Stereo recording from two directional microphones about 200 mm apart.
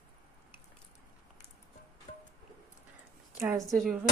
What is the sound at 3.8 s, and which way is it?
Speech, 5° right (ahead or behind).